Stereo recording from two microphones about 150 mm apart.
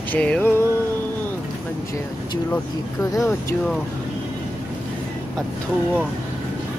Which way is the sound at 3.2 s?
20° left (ahead or behind).